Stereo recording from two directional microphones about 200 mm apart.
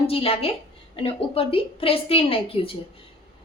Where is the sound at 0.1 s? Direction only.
30° left (ahead or behind).